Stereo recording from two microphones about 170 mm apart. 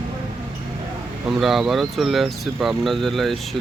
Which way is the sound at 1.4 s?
Centre (ahead or behind).